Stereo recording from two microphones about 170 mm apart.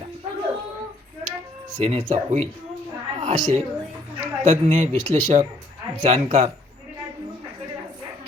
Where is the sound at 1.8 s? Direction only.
35° right (ahead or behind).